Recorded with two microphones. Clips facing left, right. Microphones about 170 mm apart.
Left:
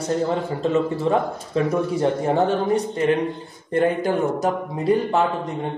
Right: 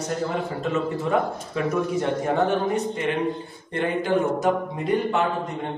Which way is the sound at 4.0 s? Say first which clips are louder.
Left 1 dB; 35° left (ahead or behind).